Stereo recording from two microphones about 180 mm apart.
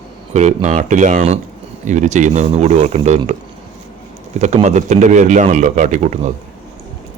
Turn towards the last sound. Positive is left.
turn(degrees=-40)  # may be behind; listen again after turning